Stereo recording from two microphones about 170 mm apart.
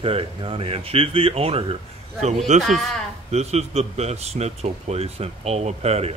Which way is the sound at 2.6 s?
Centre (ahead or behind).